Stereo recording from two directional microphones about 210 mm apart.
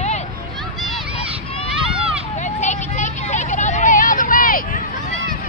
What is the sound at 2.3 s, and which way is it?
Vehicle, 35° left (ahead or behind).